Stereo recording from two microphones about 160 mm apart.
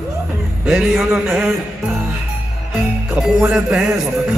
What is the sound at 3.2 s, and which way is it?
Music, 5° right (ahead or behind).